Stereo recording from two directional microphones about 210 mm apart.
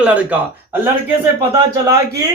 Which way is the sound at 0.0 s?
5° right (ahead or behind).